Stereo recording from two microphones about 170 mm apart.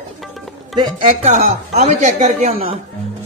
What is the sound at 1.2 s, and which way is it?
A woman's voice, 40° right (ahead or behind).